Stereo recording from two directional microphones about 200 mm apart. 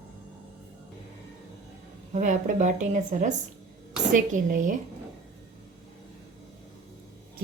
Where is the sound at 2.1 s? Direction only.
40° right (ahead or behind).